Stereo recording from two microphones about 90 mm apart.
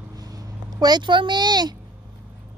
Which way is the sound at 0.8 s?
50° right (ahead or behind).